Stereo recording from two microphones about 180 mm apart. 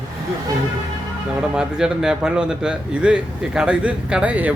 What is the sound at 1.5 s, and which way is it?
Speech, 5° right (ahead or behind).